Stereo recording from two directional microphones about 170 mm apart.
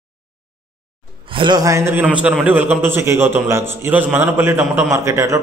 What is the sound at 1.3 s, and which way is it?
A man's voice, 25° right (ahead or behind).